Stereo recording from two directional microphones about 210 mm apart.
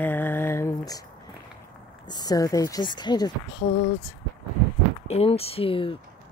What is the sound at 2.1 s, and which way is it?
Speech, 20° left (ahead or behind).